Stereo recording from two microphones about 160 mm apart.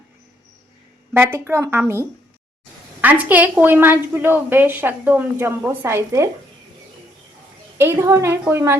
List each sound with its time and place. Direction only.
1.1 s a woman's voice: 15° right (ahead or behind)
3.0 s a woman's voice: 10° right (ahead or behind)
7.8 s a woman's voice: 15° right (ahead or behind)